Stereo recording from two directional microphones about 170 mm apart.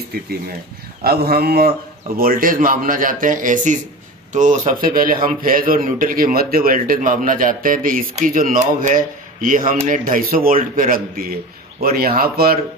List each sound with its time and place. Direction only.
1.0 s a man's voice: 65° right (ahead or behind)